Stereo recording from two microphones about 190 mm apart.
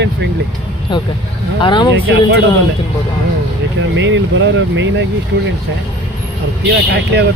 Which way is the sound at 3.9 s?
75° right (ahead or behind).